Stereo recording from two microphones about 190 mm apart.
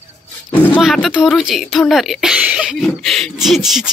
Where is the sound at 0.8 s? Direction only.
Centre (ahead or behind).